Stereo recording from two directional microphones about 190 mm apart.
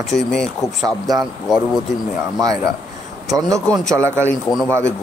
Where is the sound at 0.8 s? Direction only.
20° right (ahead or behind).